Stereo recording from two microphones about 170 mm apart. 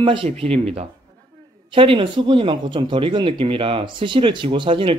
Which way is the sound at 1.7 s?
30° right (ahead or behind).